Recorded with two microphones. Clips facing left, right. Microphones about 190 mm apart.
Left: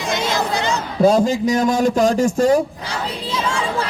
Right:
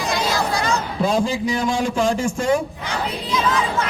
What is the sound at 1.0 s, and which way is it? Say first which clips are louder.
A man's voice: left 7 dB; 40° left (ahead or behind).